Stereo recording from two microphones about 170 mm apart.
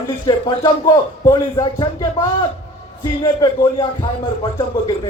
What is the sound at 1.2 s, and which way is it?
A man's voice, 20° left (ahead or behind).